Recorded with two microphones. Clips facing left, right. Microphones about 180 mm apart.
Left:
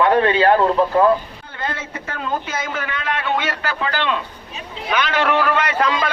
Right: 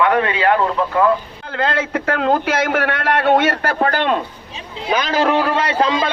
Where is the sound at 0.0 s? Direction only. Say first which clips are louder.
Left 1 dB; 30° left (ahead or behind).